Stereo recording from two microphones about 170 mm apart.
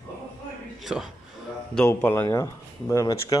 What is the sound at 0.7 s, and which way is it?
Speech, centre (ahead or behind).